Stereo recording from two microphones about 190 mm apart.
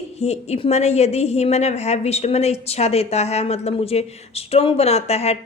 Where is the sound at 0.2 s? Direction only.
35° left (ahead or behind).